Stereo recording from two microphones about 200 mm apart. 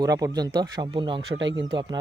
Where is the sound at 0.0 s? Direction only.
20° right (ahead or behind).